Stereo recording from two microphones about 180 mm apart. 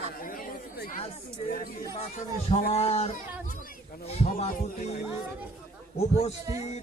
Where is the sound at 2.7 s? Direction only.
35° left (ahead or behind).